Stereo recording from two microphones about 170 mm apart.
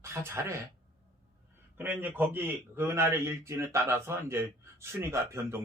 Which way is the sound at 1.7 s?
10° right (ahead or behind).